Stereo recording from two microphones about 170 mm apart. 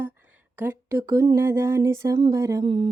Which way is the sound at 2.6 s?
30° right (ahead or behind).